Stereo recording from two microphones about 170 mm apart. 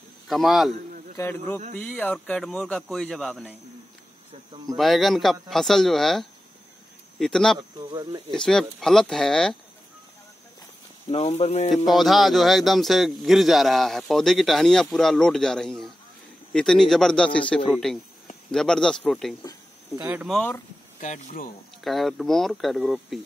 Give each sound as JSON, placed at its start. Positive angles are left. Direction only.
{"t": 0.3, "sound": "speech", "side_deg": 0}
{"t": 1.1, "sound": "speech", "side_deg": 15}
{"t": 4.7, "sound": "speech", "side_deg": 0}
{"t": 7.5, "sound": "speech", "side_deg": -25}
{"t": 8.3, "sound": "speech", "side_deg": 5}
{"t": 11.1, "sound": "speech", "side_deg": 30}
{"t": 11.9, "sound": "speech", "side_deg": 0}
{"t": 20.0, "sound": "speech", "side_deg": -10}
{"t": 20.2, "sound": "speech", "side_deg": 10}
{"t": 21.0, "sound": "speech", "side_deg": 50}
{"t": 21.8, "sound": "speech", "side_deg": 0}